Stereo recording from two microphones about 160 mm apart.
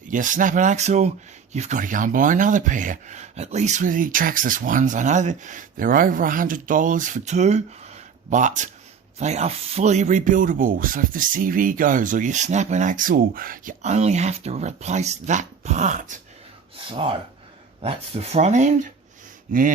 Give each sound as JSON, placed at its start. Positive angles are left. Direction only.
{"t": 0.1, "sound": "speech", "side_deg": -55}
{"t": 13.8, "sound": "speech", "side_deg": -45}
{"t": 16.9, "sound": "speech", "side_deg": -30}